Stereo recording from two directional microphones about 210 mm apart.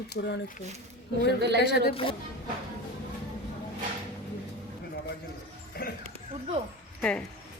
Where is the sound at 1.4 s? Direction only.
55° right (ahead or behind).